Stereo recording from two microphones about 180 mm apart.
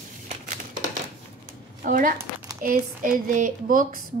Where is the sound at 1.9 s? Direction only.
50° right (ahead or behind).